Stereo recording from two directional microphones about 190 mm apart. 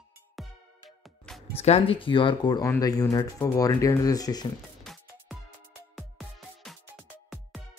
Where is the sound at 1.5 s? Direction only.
35° left (ahead or behind).